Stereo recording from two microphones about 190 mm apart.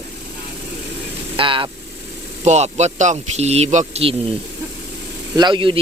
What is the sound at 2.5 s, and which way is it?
Speech, 35° right (ahead or behind).